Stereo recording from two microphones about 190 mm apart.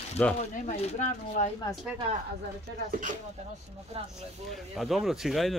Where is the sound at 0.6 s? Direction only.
40° left (ahead or behind).